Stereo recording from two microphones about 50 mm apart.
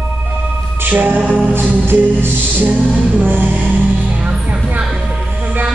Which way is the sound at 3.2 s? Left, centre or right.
Right.